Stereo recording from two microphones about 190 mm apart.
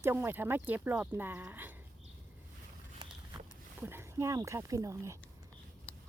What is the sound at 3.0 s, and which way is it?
Walk, 20° right (ahead or behind).